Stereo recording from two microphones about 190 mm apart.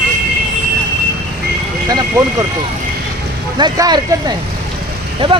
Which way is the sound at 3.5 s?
20° right (ahead or behind).